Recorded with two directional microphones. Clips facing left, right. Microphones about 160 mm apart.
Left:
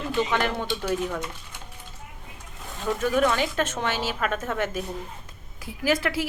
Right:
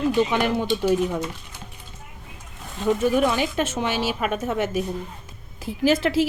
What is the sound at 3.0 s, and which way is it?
A woman's voice, 10° right (ahead or behind).